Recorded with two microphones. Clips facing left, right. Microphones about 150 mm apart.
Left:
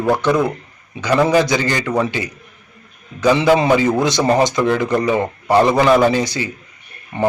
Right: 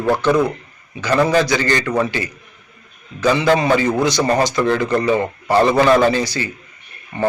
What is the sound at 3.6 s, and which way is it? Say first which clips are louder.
A man's voice: left 1 dB; 15° left (ahead or behind).